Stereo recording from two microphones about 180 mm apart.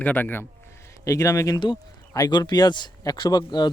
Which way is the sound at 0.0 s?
10° left (ahead or behind).